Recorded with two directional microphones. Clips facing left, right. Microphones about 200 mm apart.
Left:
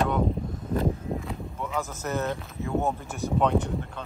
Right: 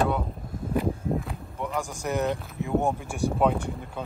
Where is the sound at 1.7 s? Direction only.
15° right (ahead or behind).